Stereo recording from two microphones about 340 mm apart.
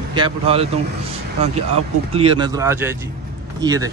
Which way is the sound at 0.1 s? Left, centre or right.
Centre.